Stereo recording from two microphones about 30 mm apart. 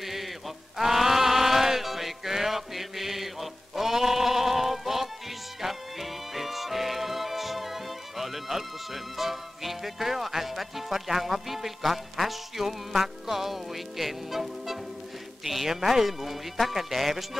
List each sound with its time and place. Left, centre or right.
0.0 s music: centre
0.7 s a sound: centre
5.6 s music: centre
15.4 s speech: centre